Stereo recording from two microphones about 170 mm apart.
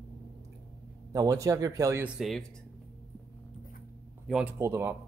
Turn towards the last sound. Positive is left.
turn(degrees=-15)  # may be behind; listen again after turning